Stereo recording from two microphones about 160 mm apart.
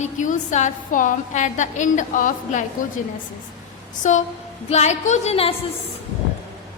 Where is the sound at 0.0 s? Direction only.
50° left (ahead or behind).